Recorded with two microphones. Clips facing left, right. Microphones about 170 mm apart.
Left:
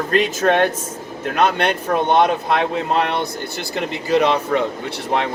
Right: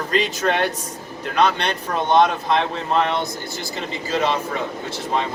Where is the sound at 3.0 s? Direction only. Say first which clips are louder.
Left 1 dB; 60° left (ahead or behind).